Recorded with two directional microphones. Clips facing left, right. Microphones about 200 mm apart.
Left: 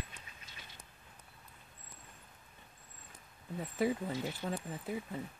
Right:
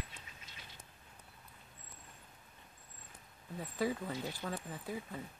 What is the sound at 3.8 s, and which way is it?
Speech, 25° left (ahead or behind).